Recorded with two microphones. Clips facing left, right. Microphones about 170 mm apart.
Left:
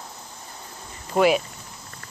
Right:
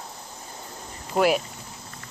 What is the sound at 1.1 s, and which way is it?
Speech, centre (ahead or behind).